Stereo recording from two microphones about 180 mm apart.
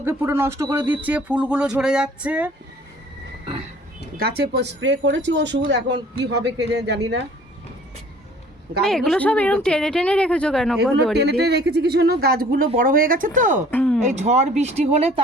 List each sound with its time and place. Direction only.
0.0 s speech: 10° right (ahead or behind)
4.2 s speech: 60° right (ahead or behind)
8.8 s speech: centre (ahead or behind)
11.2 s speech: 65° right (ahead or behind); by 13.6 s 45° right (ahead or behind)
13.7 s speech: 10° left (ahead or behind)
14.0 s speech: 40° right (ahead or behind)